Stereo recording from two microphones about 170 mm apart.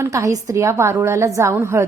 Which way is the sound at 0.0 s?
20° right (ahead or behind).